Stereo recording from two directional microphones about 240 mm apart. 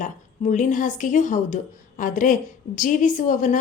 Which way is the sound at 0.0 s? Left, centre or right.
Left.